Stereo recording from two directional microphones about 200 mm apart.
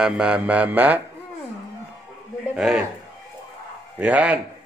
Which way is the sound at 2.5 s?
5° right (ahead or behind).